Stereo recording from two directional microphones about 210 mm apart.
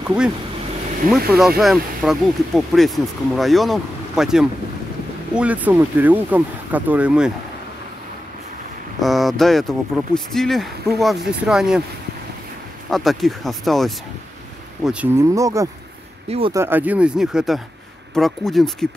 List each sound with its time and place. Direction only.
0.0 s speech: 5° right (ahead or behind)
9.0 s speech: centre (ahead or behind)
12.9 s speech: centre (ahead or behind); by 15.7 s 15° right (ahead or behind)
16.3 s speech: 25° right (ahead or behind)
16.5 s speech: 10° right (ahead or behind)